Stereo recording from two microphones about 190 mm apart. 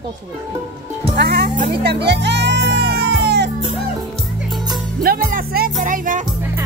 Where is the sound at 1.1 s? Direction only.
55° right (ahead or behind).